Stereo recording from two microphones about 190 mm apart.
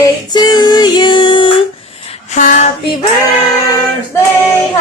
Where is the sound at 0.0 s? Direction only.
20° left (ahead or behind).